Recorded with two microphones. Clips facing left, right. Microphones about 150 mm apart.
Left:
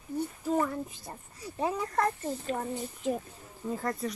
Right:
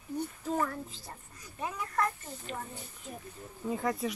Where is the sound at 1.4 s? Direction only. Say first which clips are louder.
Left 7 dB; 35° left (ahead or behind).